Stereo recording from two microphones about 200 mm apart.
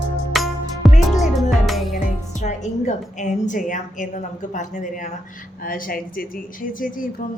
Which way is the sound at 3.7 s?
40° left (ahead or behind).